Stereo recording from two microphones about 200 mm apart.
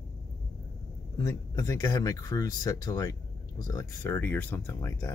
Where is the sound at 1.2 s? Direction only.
15° left (ahead or behind).